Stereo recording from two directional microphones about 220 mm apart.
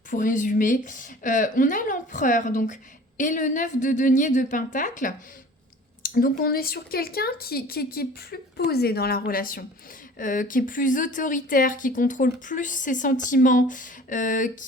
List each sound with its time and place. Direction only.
0.1 s a woman's voice: 35° left (ahead or behind)